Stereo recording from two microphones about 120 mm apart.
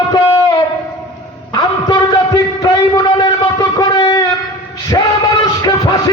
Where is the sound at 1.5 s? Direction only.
35° left (ahead or behind).